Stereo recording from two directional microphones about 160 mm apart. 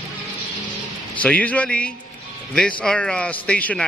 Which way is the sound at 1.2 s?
10° left (ahead or behind).